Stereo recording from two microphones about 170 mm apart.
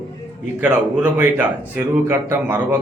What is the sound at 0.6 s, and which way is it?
A man's voice, 10° right (ahead or behind).